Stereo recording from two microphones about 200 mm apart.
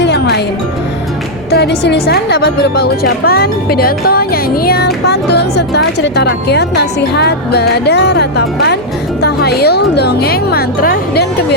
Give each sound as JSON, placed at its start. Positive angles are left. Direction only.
{"t": 0.0, "sound": "music", "side_deg": 60}
{"t": 1.5, "sound": "a woman's voice", "side_deg": 55}